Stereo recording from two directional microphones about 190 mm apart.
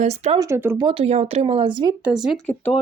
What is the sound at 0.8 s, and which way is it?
Speech, 30° right (ahead or behind).